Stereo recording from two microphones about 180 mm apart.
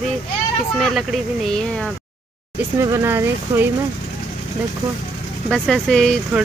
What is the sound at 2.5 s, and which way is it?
Speech, 15° right (ahead or behind).